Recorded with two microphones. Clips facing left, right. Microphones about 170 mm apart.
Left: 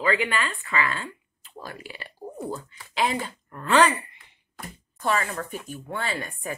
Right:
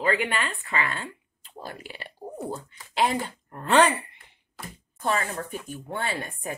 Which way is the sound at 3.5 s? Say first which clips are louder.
Even; 30° right (ahead or behind).